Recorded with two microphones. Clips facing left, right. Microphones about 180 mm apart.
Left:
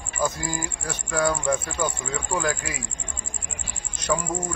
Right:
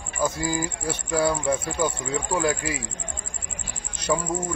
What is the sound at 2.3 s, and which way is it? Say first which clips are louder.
Speech: right 2 dB; 30° right (ahead or behind).